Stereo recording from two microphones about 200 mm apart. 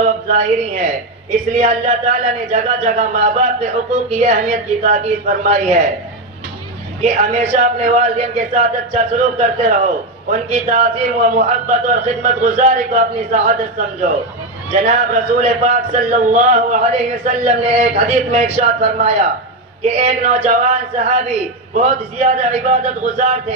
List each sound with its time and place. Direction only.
0.0 s a man's voice: 35° right (ahead or behind)
7.0 s a man's voice: 35° right (ahead or behind)
21.7 s a man's voice: 35° right (ahead or behind)